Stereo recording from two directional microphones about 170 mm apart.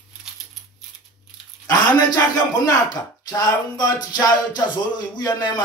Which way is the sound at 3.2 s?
25° left (ahead or behind).